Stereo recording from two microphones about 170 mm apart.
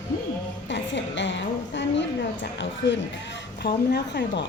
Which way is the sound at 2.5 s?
90° left.